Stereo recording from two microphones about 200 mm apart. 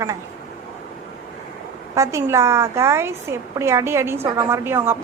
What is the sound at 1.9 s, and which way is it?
A woman's voice, 15° right (ahead or behind).